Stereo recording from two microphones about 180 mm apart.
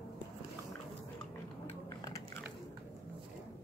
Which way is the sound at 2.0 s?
20° left (ahead or behind).